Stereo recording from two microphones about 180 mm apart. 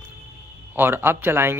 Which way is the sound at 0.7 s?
10° right (ahead or behind).